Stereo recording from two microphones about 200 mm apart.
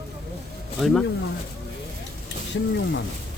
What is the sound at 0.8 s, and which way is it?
Speech, 5° left (ahead or behind).